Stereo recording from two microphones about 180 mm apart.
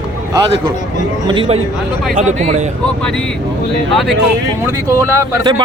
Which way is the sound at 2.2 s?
40° right (ahead or behind).